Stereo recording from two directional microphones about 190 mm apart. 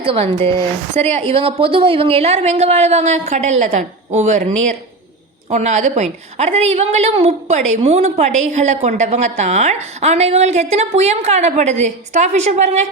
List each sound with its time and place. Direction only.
0.0 s a woman's voice: 30° right (ahead or behind)
5.5 s a woman's voice: 35° right (ahead or behind)